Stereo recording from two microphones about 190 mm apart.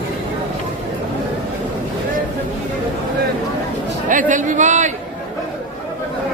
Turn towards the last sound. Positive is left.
turn(degrees=-40)  # may be behind; listen again after turning